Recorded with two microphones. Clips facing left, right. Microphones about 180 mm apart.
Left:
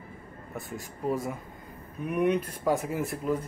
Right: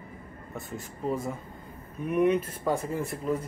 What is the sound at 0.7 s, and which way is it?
Speech, centre (ahead or behind).